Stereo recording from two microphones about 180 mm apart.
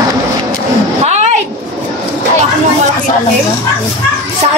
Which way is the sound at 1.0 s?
40° right (ahead or behind).